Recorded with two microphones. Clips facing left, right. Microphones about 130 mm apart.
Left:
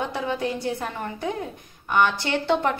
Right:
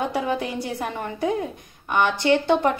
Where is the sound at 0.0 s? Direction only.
15° right (ahead or behind).